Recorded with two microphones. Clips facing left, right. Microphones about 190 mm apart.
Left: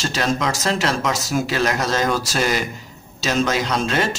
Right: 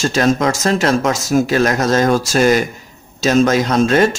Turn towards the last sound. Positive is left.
turn(degrees=-45)  # may be behind; listen again after turning